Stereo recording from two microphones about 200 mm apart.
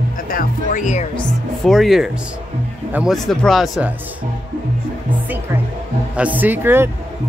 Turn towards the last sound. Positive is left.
turn(degrees=-10)  # may be behind; listen again after turning